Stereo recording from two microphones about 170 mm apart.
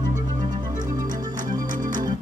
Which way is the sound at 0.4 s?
50° right (ahead or behind).